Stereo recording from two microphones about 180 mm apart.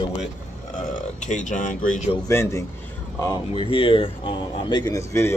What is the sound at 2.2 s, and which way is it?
Speech, 15° left (ahead or behind).